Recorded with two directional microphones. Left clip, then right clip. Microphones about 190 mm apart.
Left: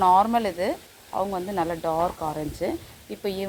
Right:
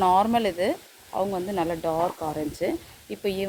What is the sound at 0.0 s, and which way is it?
Speech, 15° right (ahead or behind).